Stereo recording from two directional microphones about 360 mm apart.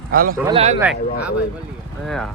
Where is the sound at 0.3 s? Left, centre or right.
Centre.